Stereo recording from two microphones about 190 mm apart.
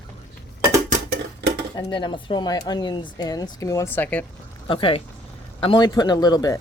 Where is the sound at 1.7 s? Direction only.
25° left (ahead or behind).